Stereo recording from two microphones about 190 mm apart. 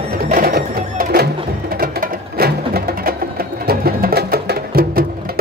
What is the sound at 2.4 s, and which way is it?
Music, 55° right (ahead or behind).